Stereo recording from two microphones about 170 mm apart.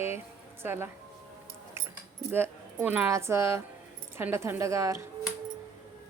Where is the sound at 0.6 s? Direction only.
15° right (ahead or behind).